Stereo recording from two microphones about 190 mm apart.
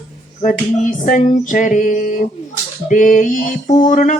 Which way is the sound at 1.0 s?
40° left (ahead or behind).